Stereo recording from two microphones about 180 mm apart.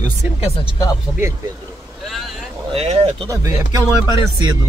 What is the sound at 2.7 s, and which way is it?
Speech, 35° right (ahead or behind).